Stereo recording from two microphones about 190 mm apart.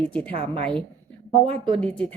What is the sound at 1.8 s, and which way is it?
Speech, 5° left (ahead or behind).